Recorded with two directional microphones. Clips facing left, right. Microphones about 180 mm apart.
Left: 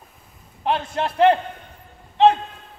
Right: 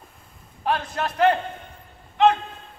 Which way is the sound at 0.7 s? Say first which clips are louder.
Left 2 dB; 25° left (ahead or behind).